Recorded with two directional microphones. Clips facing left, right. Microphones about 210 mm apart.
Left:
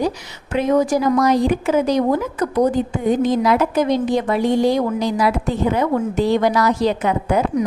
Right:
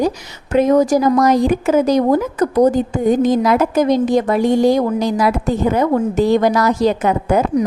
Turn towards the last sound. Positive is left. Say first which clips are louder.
# right 3 dB
turn(degrees=-45)  # may be behind; listen again after turning